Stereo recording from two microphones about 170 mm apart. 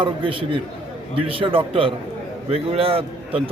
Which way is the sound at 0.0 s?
30° right (ahead or behind).